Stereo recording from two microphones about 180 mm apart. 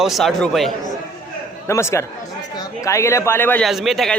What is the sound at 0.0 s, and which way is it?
Speech, centre (ahead or behind).